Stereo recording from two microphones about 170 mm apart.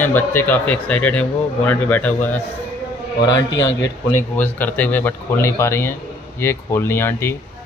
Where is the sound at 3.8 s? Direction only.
10° left (ahead or behind).